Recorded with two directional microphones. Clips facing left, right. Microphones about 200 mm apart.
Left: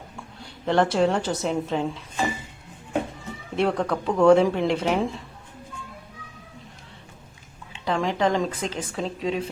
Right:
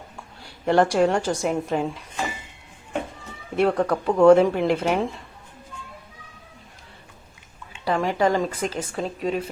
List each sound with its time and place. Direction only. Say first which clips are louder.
0.6 s speech: right 2 dB; 10° right (ahead or behind)
1.0 s speech: right 2 dB; centre (ahead or behind)
3.5 s speech: right 3 dB; 5° right (ahead or behind)
7.9 s speech: right 2 dB; 5° right (ahead or behind)